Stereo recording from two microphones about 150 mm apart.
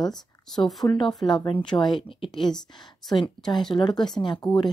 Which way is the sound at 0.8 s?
35° left (ahead or behind).